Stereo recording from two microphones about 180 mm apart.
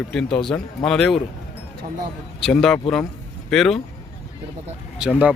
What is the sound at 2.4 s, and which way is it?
A man's voice, centre (ahead or behind).